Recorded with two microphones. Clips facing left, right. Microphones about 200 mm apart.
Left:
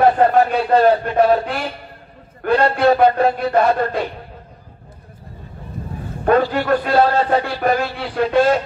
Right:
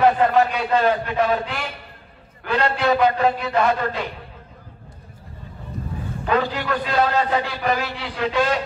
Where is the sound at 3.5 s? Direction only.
45° left (ahead or behind).